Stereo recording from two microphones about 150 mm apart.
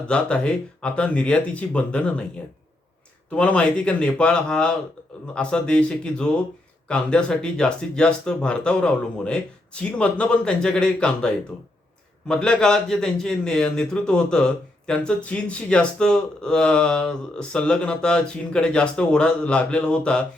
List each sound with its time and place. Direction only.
0.1 s speech: 10° left (ahead or behind)
3.3 s a man's voice: 5° left (ahead or behind)